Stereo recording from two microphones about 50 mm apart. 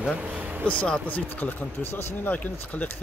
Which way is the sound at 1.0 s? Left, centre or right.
Left.